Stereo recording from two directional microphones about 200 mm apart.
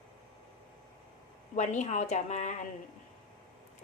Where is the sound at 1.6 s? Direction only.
35° left (ahead or behind).